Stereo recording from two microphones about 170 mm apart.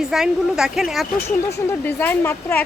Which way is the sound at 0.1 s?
5° right (ahead or behind).